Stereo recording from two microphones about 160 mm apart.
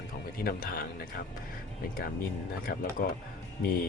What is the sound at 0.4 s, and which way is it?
Speech, 70° left (ahead or behind).